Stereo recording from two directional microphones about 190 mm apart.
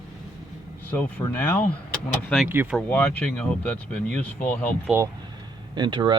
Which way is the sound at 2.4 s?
10° right (ahead or behind).